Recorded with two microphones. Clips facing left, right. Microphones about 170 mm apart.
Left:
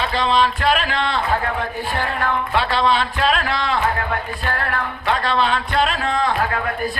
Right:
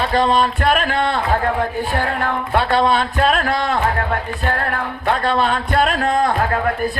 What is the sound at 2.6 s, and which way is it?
Speech, 50° right (ahead or behind).